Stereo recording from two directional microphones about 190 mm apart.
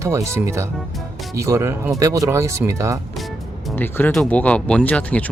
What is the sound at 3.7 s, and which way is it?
Speech, 10° left (ahead or behind).